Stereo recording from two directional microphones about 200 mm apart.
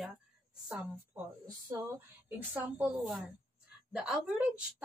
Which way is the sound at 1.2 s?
10° right (ahead or behind).